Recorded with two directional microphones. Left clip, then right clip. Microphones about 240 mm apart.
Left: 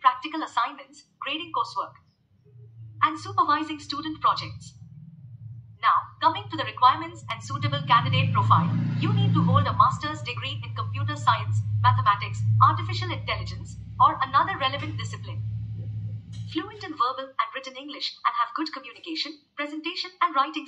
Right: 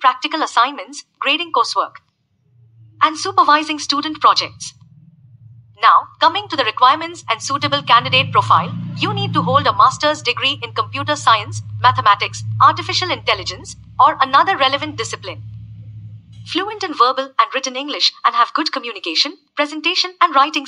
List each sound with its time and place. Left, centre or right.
0.0 s a woman's voice: right
3.0 s a woman's voice: right
5.8 s a woman's voice: right
16.4 s a woman's voice: right